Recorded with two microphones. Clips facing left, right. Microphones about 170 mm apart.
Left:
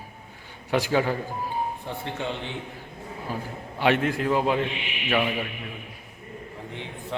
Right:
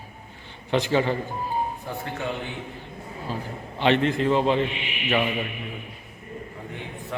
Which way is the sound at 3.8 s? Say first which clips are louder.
Right 2 dB; 10° left (ahead or behind).